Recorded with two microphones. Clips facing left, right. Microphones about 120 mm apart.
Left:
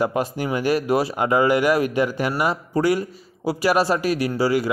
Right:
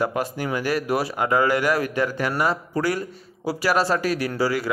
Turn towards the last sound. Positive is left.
turn(degrees=20)  # may be behind; listen again after turning